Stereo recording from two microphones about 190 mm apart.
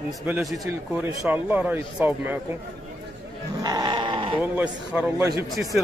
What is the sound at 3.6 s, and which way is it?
Sheep, 20° right (ahead or behind).